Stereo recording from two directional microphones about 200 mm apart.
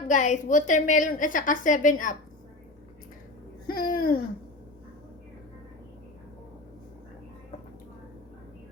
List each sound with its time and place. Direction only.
0.1 s a woman's voice: 40° left (ahead or behind)
3.7 s babbling: 45° left (ahead or behind)